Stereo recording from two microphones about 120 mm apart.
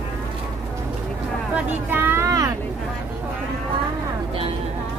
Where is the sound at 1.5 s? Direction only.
15° right (ahead or behind).